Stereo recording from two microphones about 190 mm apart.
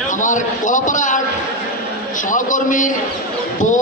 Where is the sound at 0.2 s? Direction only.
40° left (ahead or behind).